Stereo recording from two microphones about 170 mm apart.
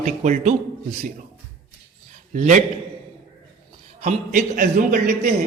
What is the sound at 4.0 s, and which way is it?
Speech, 45° right (ahead or behind).